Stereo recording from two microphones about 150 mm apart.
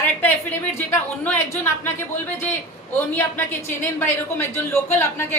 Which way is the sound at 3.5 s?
15° left (ahead or behind).